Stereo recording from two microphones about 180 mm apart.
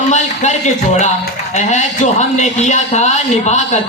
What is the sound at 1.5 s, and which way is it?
A man's voice, 40° left (ahead or behind).